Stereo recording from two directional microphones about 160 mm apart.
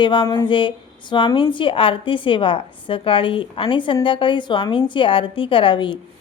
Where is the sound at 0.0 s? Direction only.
30° left (ahead or behind).